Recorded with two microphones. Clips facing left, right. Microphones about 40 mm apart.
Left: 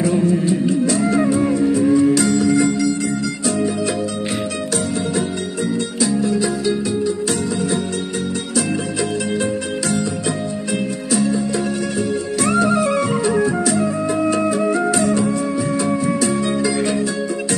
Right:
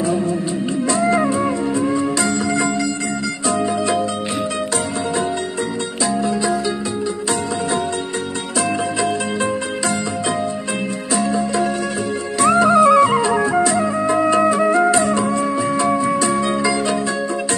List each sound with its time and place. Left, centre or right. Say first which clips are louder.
0.0 s music: left 2 dB; right
6.0 s music: even; right
11.1 s music: even; right
12.4 s music: right 6 dB; centre